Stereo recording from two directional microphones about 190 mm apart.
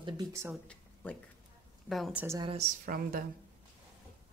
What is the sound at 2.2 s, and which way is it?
Speech, 15° right (ahead or behind).